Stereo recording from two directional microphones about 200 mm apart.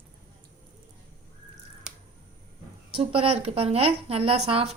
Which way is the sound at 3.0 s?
30° right (ahead or behind).